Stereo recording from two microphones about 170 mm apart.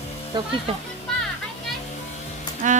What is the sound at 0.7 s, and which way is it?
Speech, 35° right (ahead or behind).